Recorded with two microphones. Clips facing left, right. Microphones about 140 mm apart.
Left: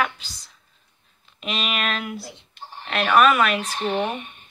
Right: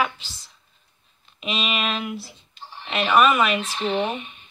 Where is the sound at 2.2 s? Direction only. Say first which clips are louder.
Left 3 dB; 70° left (ahead or behind).